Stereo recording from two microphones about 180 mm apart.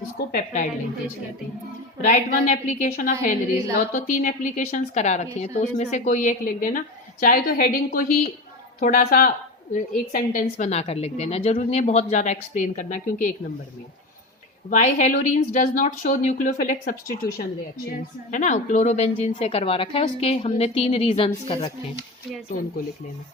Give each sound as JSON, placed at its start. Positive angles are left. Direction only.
{"t": 0.3, "sound": "speech", "side_deg": 45}
{"t": 2.0, "sound": "speech", "side_deg": 45}
{"t": 10.6, "sound": "a woman's voice", "side_deg": 35}
{"t": 14.7, "sound": "speech", "side_deg": 45}